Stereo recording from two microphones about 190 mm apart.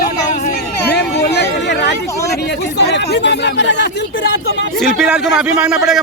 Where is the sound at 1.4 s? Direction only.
60° left (ahead or behind).